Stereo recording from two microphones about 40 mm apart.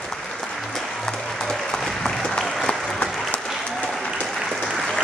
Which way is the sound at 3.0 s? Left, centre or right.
Left.